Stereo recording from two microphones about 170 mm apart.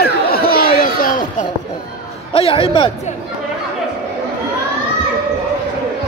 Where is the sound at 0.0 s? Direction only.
65° left (ahead or behind).